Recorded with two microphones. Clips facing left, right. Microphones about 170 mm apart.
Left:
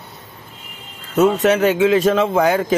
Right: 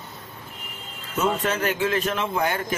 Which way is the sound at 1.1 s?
75° left (ahead or behind).